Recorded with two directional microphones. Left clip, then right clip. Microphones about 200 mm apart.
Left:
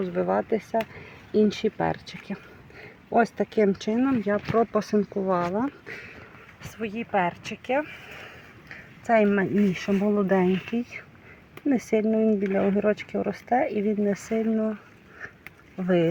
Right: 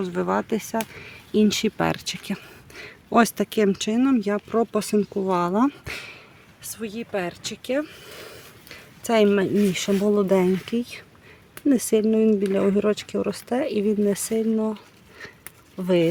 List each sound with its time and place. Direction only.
0.0 s speech: 30° right (ahead or behind)
5.5 s speech: 45° right (ahead or behind)
6.6 s speech: 15° right (ahead or behind)
9.0 s speech: 40° right (ahead or behind)
9.9 s speech: 25° right (ahead or behind)
10.2 s speech: 35° right (ahead or behind)
13.7 s speech: 5° right (ahead or behind)
14.2 s speech: 25° right (ahead or behind)